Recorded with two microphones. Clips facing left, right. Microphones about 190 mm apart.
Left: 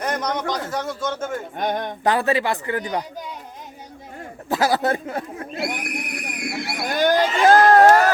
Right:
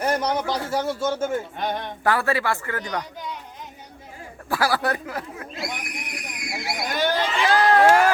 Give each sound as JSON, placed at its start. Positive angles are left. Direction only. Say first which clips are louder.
{"t": 0.0, "sound": "a sound", "louder": "right 2 dB", "side_deg": -30}
{"t": 1.0, "sound": "speech", "louder": "right 2 dB", "side_deg": -10}
{"t": 1.5, "sound": "speech", "louder": "left 3 dB", "side_deg": 45}
{"t": 2.0, "sound": "speech", "louder": "left 2 dB", "side_deg": 20}
{"t": 4.4, "sound": "speech", "louder": "left 3 dB", "side_deg": 20}
{"t": 5.5, "sound": "speech", "louder": "left 6 dB", "side_deg": 60}
{"t": 6.6, "sound": "a sound", "louder": "left 3 dB", "side_deg": 60}